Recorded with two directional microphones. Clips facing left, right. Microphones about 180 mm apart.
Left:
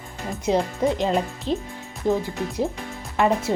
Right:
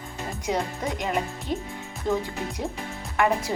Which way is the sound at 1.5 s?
80° left.